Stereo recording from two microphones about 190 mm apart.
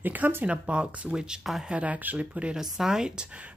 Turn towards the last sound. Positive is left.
turn(degrees=-5)  # may be behind; listen again after turning